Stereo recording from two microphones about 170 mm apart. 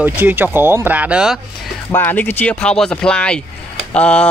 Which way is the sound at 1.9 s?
10° left (ahead or behind).